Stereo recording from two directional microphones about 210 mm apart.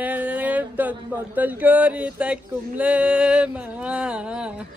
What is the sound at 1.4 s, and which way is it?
Male singing, 10° right (ahead or behind).